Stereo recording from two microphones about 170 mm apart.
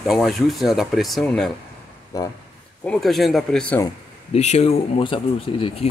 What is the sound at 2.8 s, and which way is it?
Speech, 5° left (ahead or behind).